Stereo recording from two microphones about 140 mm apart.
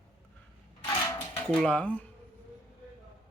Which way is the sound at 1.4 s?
5° left (ahead or behind).